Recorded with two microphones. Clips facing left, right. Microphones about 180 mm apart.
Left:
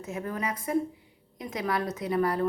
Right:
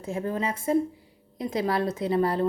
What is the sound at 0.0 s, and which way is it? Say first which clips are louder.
A woman's voice: right 4 dB; 30° right (ahead or behind).